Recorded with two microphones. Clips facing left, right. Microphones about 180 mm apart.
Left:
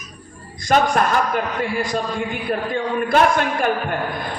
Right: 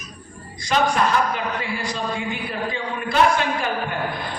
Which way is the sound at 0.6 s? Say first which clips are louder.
Left 3 dB; 50° left (ahead or behind).